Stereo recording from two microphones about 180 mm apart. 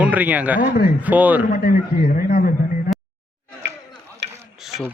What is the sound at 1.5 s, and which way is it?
A man's voice, 55° left (ahead or behind).